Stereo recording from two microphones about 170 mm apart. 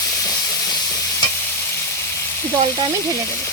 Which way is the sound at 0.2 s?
20° left (ahead or behind).